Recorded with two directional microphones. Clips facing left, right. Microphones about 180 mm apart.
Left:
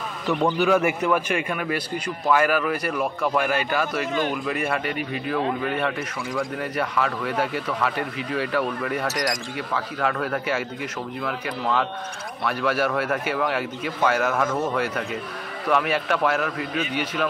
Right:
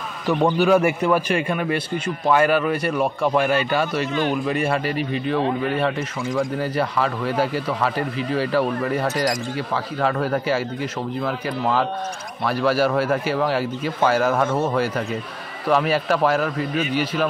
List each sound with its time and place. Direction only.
0.3 s a man's voice: 35° right (ahead or behind)